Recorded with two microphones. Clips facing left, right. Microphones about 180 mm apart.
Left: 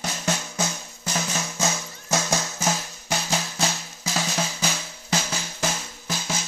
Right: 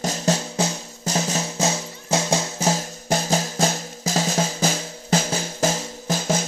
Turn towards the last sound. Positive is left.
turn(degrees=-50)  # may be behind; listen again after turning